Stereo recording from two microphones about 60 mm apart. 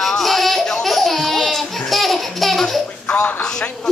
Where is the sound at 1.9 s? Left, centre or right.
Centre.